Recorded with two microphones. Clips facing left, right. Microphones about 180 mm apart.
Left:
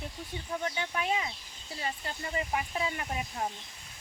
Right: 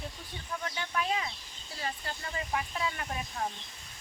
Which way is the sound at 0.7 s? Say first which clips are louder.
Right 2 dB; 25° left (ahead or behind).